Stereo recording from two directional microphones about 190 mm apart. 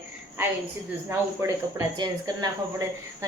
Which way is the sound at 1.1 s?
15° right (ahead or behind).